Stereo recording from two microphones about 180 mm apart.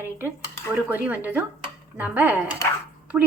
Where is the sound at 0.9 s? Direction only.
10° right (ahead or behind).